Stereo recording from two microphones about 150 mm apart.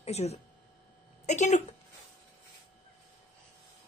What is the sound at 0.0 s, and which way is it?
A woman's voice, 45° left (ahead or behind).